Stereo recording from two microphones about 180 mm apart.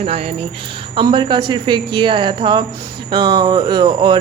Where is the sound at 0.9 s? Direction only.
25° right (ahead or behind).